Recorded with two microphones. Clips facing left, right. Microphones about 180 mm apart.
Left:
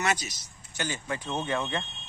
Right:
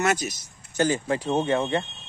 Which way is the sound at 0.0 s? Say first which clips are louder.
Right 5 dB; 50° right (ahead or behind).